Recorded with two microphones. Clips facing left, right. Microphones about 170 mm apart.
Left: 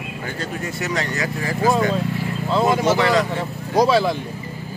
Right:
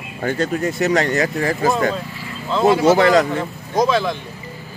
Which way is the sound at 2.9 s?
45° right (ahead or behind).